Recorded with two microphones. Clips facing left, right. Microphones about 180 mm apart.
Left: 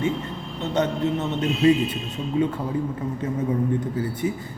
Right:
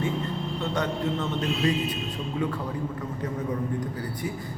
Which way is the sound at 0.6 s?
20° left (ahead or behind).